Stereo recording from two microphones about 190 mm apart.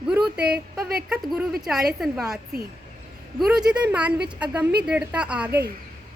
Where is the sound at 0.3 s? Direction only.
55° right (ahead or behind).